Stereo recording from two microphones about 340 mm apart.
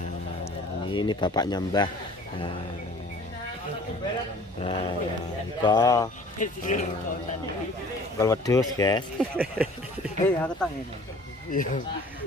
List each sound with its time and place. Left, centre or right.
0.8 s speech: centre
4.6 s speech: centre
6.4 s speech: left
8.2 s speech: centre
9.2 s speech: centre
11.5 s speech: left